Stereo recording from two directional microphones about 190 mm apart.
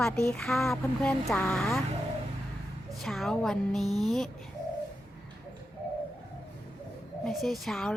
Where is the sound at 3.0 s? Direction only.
Centre (ahead or behind).